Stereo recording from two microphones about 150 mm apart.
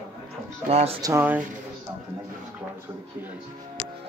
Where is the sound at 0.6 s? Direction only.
40° right (ahead or behind).